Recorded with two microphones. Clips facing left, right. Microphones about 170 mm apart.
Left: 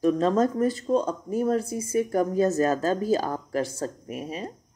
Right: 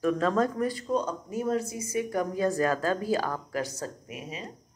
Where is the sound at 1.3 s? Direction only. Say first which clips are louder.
Left 6 dB; 50° left (ahead or behind).